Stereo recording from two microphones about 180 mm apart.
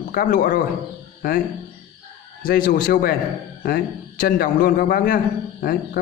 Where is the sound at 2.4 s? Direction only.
55° left (ahead or behind).